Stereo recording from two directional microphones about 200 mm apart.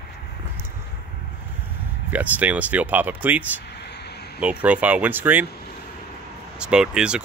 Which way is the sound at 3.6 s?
55° left (ahead or behind).